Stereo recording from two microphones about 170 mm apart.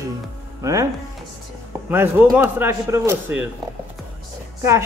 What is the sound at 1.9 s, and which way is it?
A man's voice, 10° right (ahead or behind).